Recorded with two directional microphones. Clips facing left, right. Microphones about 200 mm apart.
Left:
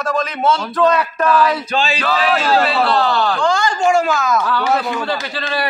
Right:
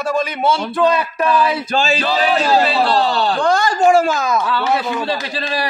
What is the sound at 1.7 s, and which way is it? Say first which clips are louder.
Speech: right 4 dB; 35° right (ahead or behind).